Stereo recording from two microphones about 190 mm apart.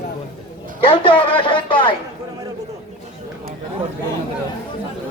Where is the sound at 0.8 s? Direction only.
25° left (ahead or behind).